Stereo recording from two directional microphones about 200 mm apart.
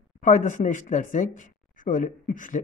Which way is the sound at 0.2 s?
40° left (ahead or behind).